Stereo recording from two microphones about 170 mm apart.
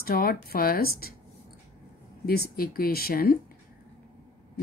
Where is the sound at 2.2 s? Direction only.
65° left (ahead or behind).